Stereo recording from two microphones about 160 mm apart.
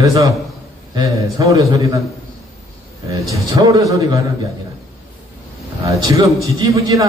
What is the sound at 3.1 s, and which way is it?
Speech, 20° right (ahead or behind).